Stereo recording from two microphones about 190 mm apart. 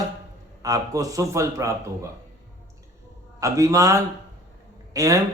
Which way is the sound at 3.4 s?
15° right (ahead or behind).